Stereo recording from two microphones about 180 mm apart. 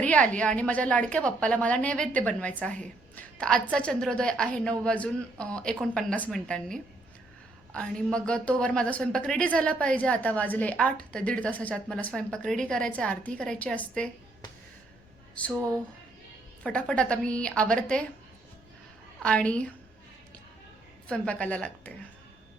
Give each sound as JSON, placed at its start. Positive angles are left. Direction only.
{"t": 0.0, "sound": "a woman's voice", "side_deg": 5}
{"t": 16.6, "sound": "speech", "side_deg": 5}
{"t": 19.2, "sound": "speech", "side_deg": 5}
{"t": 21.1, "sound": "a woman's voice", "side_deg": 5}